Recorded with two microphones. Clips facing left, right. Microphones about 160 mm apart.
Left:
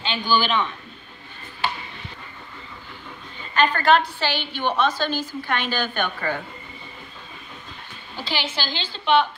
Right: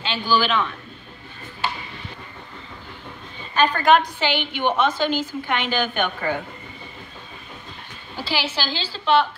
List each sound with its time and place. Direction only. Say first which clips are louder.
0.0 s a woman's voice: right 1 dB; centre (ahead or behind)
3.5 s a woman's voice: right 1 dB; 10° right (ahead or behind)
8.2 s a woman's voice: right 2 dB; 10° right (ahead or behind)